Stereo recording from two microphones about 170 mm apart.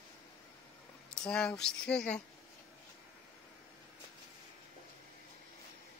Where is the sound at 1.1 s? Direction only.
5° left (ahead or behind).